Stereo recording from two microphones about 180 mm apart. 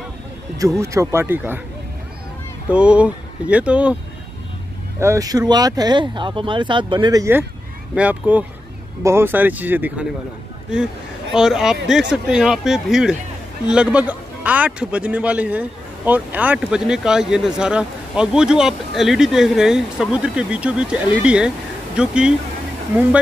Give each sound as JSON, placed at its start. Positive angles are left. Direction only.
{"t": 0.6, "sound": "a man's voice", "side_deg": -15}
{"t": 2.7, "sound": "a man's voice", "side_deg": -5}
{"t": 5.0, "sound": "a man's voice", "side_deg": -20}
{"t": 11.3, "sound": "a man's voice", "side_deg": 0}